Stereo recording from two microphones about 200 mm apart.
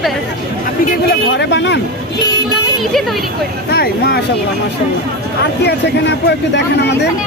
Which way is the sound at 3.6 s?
50° left (ahead or behind).